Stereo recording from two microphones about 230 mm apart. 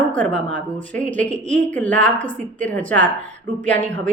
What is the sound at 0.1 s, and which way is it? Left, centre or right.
A woman's voice, centre.